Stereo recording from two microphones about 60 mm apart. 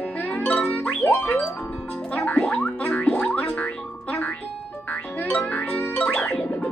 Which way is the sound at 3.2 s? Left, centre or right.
Centre.